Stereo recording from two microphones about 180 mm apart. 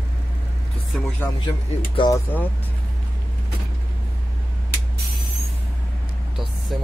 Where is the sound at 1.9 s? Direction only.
25° left (ahead or behind).